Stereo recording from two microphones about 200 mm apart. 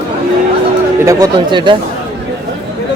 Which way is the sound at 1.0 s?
20° right (ahead or behind).